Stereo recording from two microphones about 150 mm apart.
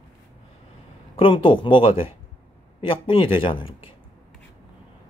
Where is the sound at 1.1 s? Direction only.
35° left (ahead or behind).